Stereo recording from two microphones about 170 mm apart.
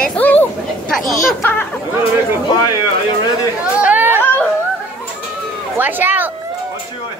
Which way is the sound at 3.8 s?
10° right (ahead or behind).